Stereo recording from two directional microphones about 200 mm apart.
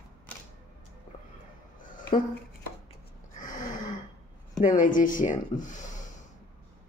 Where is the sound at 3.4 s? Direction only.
40° left (ahead or behind).